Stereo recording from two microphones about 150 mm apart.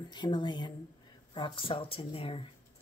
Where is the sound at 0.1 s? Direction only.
30° left (ahead or behind).